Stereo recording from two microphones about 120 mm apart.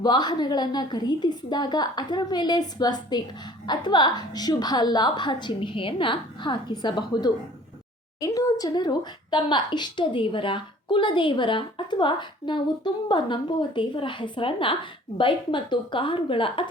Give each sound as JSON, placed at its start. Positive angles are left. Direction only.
{"t": 0.0, "sound": "a woman's voice", "side_deg": 35}